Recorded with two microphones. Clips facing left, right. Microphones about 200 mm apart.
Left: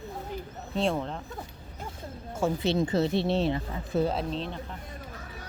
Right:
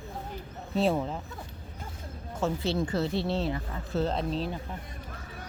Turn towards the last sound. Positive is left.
turn(degrees=-5)  # may be behind; listen again after turning